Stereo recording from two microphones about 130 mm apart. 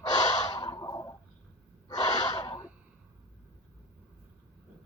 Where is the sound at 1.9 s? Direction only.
30° left (ahead or behind).